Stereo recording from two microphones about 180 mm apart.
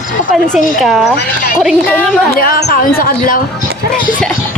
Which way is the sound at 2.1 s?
55° left (ahead or behind).